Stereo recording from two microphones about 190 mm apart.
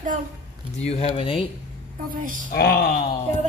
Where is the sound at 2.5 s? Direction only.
55° left (ahead or behind).